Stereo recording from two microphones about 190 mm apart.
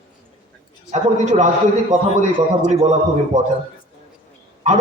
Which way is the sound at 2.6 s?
35° right (ahead or behind).